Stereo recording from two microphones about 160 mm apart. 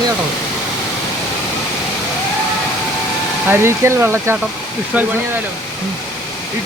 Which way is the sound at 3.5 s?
15° right (ahead or behind).